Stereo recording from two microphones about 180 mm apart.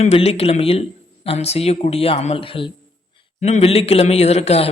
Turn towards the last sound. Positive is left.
turn(degrees=35)  # may be behind; listen again after turning